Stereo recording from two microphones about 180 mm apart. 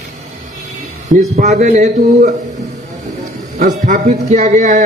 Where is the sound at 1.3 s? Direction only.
45° right (ahead or behind).